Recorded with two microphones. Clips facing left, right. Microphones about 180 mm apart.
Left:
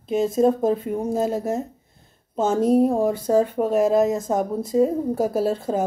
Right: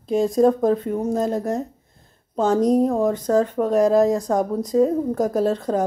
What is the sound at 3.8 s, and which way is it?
Speech, 20° left (ahead or behind).